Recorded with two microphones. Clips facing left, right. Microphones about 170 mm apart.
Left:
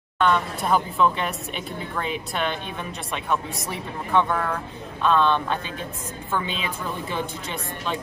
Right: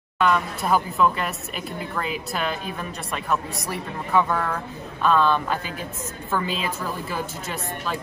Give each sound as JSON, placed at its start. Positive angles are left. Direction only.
{"t": 0.2, "sound": "speech", "side_deg": -5}